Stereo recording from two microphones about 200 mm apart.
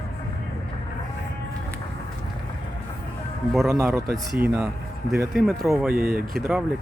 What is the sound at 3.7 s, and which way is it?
Speech, 15° right (ahead or behind).